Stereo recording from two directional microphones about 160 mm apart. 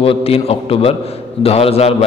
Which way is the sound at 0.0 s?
35° left (ahead or behind).